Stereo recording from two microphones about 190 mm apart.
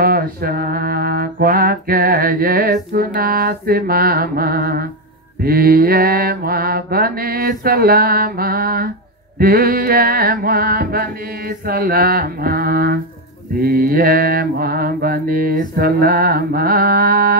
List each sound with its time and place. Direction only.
0.0 s music: 50° right (ahead or behind)